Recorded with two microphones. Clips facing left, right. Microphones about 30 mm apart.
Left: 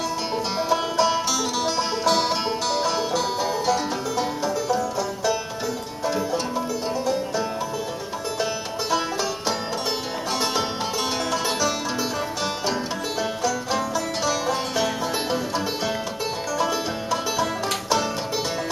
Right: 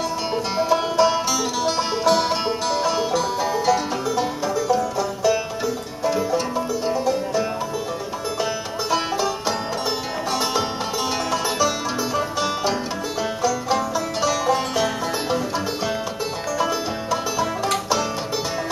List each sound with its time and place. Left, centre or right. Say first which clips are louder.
0.6 s music: right 4 dB; centre
11.3 s music: right 3 dB; centre
13.2 s music: right 3 dB; centre